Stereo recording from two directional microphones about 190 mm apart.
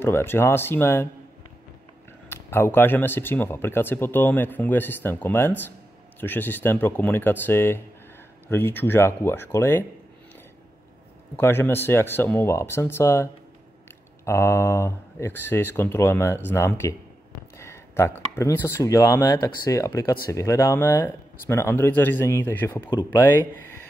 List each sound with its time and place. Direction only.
0.0 s speech: 10° left (ahead or behind)
2.2 s speech: 10° left (ahead or behind)
11.3 s speech: 10° left (ahead or behind)